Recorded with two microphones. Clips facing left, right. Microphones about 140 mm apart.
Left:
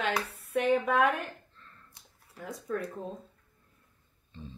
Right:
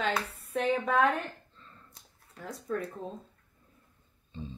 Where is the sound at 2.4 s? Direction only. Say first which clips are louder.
Even; centre (ahead or behind).